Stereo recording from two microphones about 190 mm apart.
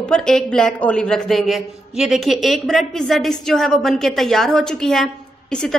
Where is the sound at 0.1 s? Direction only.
5° left (ahead or behind).